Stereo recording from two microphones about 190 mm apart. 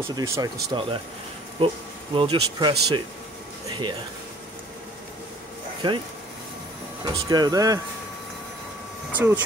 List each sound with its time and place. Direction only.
0.1 s speech: 20° right (ahead or behind)
2.1 s speech: 30° right (ahead or behind)
5.8 s speech: 25° right (ahead or behind)
7.1 s speech: 20° right (ahead or behind)
9.1 s speech: 10° right (ahead or behind)